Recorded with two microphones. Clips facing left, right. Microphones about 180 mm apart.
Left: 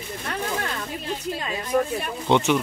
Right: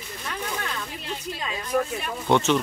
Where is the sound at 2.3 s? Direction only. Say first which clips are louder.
Left 1 dB; 15° left (ahead or behind).